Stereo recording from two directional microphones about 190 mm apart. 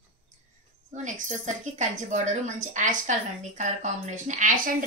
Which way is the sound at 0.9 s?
40° right (ahead or behind).